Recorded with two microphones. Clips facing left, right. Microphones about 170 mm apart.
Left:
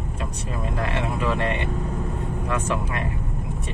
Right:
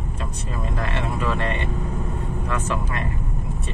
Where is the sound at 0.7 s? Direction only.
10° left (ahead or behind).